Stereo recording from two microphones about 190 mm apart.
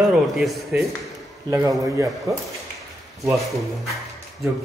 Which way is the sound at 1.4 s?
20° right (ahead or behind).